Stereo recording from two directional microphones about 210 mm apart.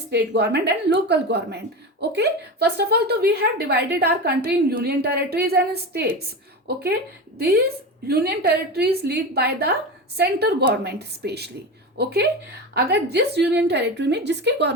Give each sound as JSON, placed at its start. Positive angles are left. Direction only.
{"t": 0.1, "sound": "a woman's voice", "side_deg": -55}